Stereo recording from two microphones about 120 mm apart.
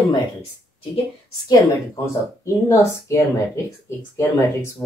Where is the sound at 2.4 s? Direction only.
25° left (ahead or behind).